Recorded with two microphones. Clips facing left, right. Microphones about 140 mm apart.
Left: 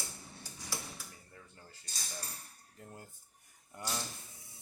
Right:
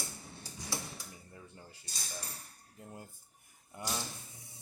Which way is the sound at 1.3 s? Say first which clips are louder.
Right 3 dB; 20° right (ahead or behind).